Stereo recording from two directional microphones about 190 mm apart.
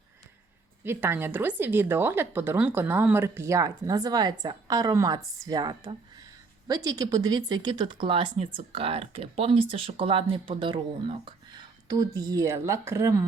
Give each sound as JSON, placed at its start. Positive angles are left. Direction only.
{"t": 0.9, "sound": "a woman's voice", "side_deg": -10}